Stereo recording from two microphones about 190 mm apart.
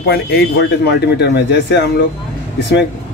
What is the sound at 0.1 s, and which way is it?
Speech, 55° left (ahead or behind).